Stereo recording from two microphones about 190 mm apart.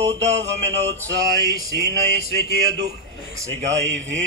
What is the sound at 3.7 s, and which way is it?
Mantra, 75° right (ahead or behind).